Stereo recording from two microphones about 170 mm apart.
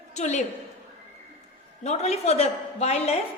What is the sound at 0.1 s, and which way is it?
Speech, 45° left (ahead or behind).